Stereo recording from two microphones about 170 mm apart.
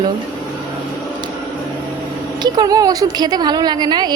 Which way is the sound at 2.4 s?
25° right (ahead or behind).